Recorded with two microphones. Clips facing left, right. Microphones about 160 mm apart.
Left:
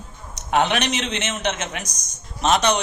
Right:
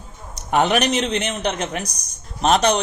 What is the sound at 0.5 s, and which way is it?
Speech, 35° right (ahead or behind).